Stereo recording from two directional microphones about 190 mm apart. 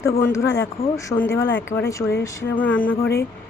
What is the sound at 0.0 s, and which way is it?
Speech, 15° left (ahead or behind).